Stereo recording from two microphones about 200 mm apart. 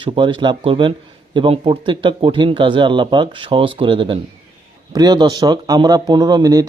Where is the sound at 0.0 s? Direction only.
25° right (ahead or behind).